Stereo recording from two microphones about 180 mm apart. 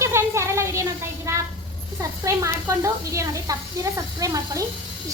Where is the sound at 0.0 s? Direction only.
15° right (ahead or behind).